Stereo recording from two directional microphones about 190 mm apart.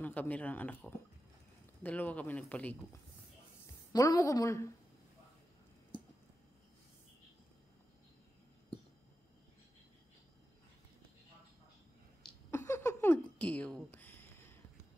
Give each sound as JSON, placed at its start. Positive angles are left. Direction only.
{"t": 0.0, "sound": "speech", "side_deg": 10}
{"t": 3.6, "sound": "a woman's voice", "side_deg": 20}
{"t": 12.4, "sound": "a sound", "side_deg": 15}